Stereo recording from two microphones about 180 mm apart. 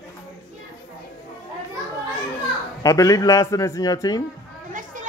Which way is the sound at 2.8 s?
20° left (ahead or behind).